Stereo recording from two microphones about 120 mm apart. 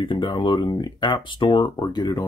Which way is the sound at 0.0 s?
45° left (ahead or behind).